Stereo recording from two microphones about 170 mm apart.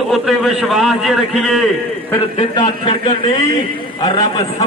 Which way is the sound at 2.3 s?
30° left (ahead or behind).